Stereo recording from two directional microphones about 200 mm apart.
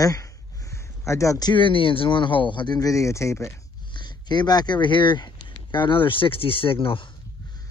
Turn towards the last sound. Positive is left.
turn(degrees=25)  # may be behind; listen again after turning